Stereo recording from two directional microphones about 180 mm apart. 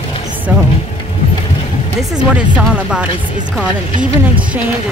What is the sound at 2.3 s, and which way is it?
A woman's voice, 5° right (ahead or behind).